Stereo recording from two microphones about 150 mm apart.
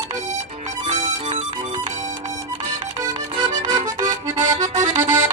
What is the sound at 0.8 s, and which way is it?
Music, 50° right (ahead or behind).